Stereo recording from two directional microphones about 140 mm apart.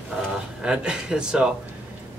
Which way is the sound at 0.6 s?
5° right (ahead or behind).